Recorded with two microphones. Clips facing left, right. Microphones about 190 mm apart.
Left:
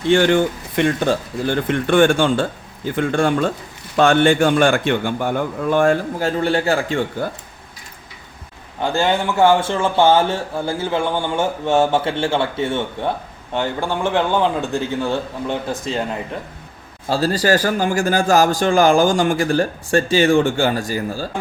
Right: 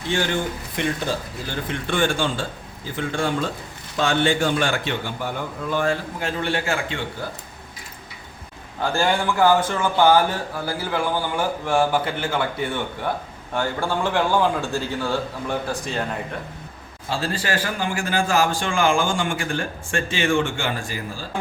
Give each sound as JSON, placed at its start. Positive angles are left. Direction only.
{"t": 0.1, "sound": "a man's voice", "side_deg": 60}
{"t": 6.1, "sound": "speech", "side_deg": 35}
{"t": 8.8, "sound": "a man's voice", "side_deg": 20}
{"t": 17.1, "sound": "speech", "side_deg": 40}